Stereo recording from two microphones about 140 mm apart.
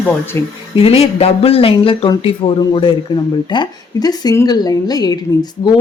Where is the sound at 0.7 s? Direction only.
45° left (ahead or behind).